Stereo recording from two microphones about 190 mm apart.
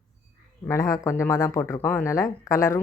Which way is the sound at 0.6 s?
15° left (ahead or behind).